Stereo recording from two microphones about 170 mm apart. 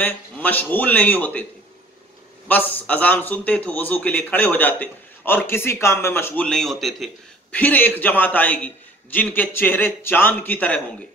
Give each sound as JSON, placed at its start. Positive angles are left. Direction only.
{"t": 0.0, "sound": "a man's voice", "side_deg": 10}
{"t": 2.4, "sound": "a man's voice", "side_deg": 10}